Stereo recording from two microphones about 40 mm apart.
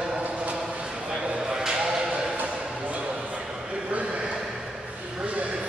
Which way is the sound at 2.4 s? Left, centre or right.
Right.